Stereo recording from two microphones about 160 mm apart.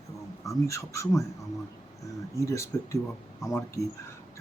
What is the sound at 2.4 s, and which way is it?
Speech, 20° left (ahead or behind).